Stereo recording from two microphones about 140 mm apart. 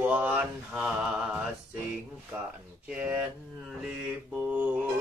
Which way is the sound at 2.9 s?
10° right (ahead or behind).